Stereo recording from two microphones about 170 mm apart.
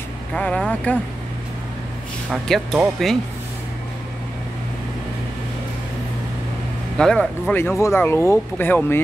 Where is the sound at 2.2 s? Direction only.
Centre (ahead or behind).